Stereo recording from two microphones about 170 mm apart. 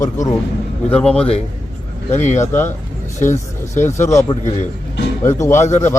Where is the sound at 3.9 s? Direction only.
15° left (ahead or behind).